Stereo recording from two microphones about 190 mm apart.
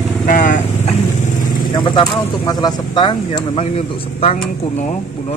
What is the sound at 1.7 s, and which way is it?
Speech, 25° left (ahead or behind).